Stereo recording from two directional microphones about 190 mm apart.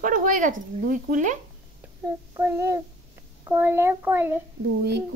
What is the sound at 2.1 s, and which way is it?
A child's voice, 15° right (ahead or behind).